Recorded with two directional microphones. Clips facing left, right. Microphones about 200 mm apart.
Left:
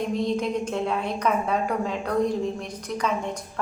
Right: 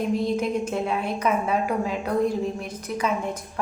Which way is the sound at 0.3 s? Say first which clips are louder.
Right 1 dB; 10° right (ahead or behind).